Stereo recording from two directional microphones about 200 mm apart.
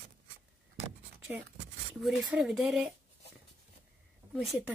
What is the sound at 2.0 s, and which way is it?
Speech, centre (ahead or behind).